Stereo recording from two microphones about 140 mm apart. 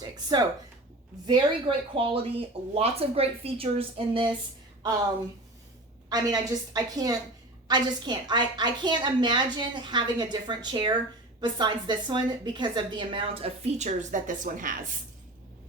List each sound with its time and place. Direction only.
0.3 s a woman's voice: 30° right (ahead or behind)
6.1 s a woman's voice: 25° right (ahead or behind); by 14.8 s 75° right (ahead or behind)